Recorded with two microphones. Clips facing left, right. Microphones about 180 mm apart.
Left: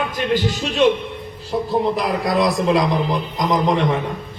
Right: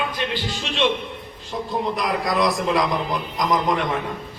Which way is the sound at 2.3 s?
Centre (ahead or behind).